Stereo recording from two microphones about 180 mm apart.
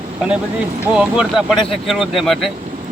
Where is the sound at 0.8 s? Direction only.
5° right (ahead or behind).